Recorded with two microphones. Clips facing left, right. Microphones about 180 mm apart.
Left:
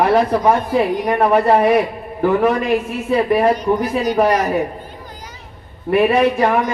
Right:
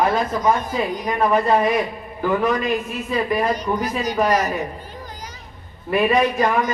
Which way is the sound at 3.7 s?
25° left (ahead or behind).